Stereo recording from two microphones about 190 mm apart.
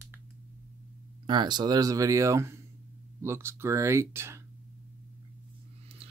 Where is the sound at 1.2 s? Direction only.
25° right (ahead or behind).